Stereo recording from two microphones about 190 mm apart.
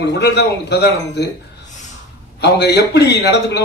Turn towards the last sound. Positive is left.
turn(degrees=60)  # may be behind; listen again after turning